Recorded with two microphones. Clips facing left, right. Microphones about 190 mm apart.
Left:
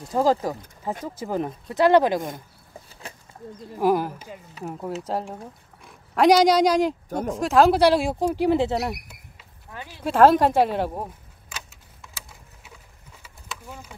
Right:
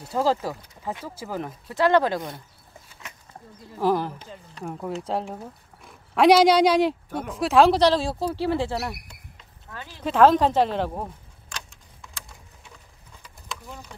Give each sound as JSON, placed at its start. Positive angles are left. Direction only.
{"t": 0.1, "sound": "speech", "side_deg": 15}
{"t": 3.7, "sound": "speech", "side_deg": 10}
{"t": 7.1, "sound": "speech", "side_deg": 40}
{"t": 7.3, "sound": "speech", "side_deg": 0}
{"t": 9.7, "sound": "a sound", "side_deg": 15}